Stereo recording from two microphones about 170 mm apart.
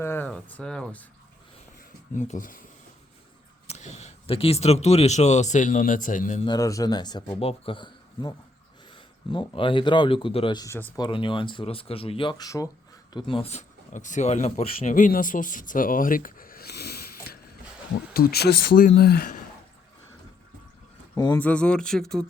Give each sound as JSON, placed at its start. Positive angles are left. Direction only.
{"t": 0.0, "sound": "speech", "side_deg": 10}
{"t": 2.1, "sound": "speech", "side_deg": 45}
{"t": 3.7, "sound": "speech", "side_deg": 40}
{"t": 6.4, "sound": "speech", "side_deg": 25}
{"t": 18.1, "sound": "speech", "side_deg": 65}
{"t": 21.3, "sound": "speech", "side_deg": 10}